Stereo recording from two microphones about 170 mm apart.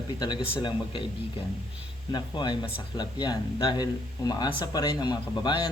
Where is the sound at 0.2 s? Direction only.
25° left (ahead or behind).